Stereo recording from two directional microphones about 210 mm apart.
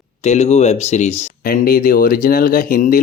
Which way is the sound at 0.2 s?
30° left (ahead or behind).